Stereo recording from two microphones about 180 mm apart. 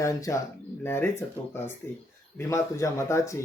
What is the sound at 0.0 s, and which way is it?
Speech, 20° left (ahead or behind).